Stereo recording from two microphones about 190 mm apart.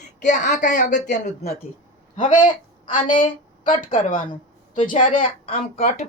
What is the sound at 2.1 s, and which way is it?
Speech, 45° left (ahead or behind).